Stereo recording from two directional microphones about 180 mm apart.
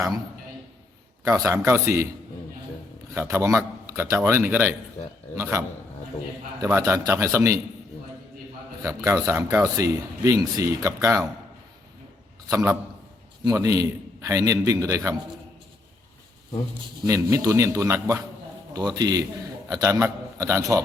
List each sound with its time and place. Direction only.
1.2 s speech: 20° right (ahead or behind)
3.2 s speech: 15° right (ahead or behind)
8.8 s speech: 20° right (ahead or behind)
12.5 s a man's voice: 15° right (ahead or behind)
17.1 s a man's voice: 15° right (ahead or behind)